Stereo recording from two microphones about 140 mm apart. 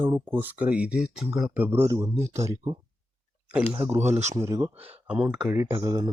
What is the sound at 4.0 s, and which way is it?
Speech, 55° right (ahead or behind).